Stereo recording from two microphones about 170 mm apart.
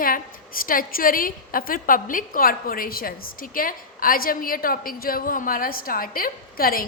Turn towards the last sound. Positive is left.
turn(degrees=60)  # may be behind; listen again after turning